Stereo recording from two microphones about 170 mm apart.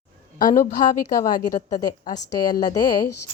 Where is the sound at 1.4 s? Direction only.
20° left (ahead or behind).